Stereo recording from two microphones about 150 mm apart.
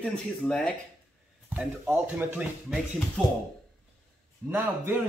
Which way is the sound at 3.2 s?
5° left (ahead or behind).